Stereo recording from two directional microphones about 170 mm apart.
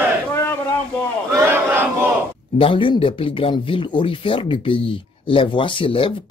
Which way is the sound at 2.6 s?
30° left (ahead or behind).